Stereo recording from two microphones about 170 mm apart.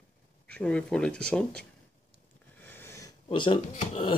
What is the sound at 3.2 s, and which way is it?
Speech, 30° left (ahead or behind).